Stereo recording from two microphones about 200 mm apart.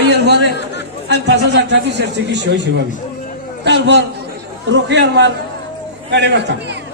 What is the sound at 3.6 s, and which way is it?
A man's voice, 60° right (ahead or behind).